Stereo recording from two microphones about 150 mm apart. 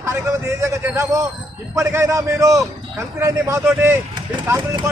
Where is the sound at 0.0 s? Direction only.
20° right (ahead or behind).